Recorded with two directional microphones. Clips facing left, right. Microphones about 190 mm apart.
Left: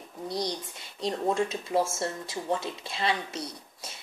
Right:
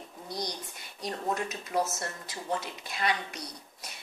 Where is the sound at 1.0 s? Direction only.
25° left (ahead or behind).